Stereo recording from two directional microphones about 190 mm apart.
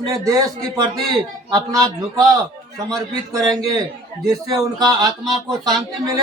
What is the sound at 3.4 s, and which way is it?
Speech, 20° right (ahead or behind).